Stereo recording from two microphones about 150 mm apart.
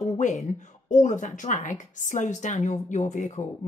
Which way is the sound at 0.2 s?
55° left (ahead or behind).